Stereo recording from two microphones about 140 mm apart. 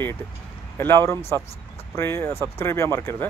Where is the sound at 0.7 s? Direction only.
15° left (ahead or behind).